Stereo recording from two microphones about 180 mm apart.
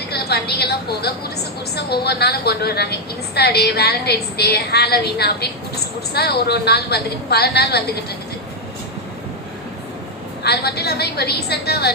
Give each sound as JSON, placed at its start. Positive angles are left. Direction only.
{"t": 0.1, "sound": "a woman's voice", "side_deg": 65}
{"t": 10.4, "sound": "a woman's voice", "side_deg": 65}